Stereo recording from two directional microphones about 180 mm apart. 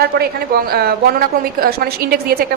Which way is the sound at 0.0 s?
60° right (ahead or behind).